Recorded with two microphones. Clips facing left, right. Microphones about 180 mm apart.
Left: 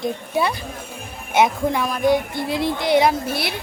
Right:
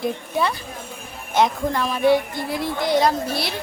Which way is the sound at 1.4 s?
10° left (ahead or behind).